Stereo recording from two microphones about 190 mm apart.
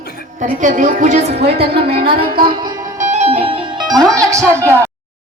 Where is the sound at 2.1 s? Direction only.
55° right (ahead or behind).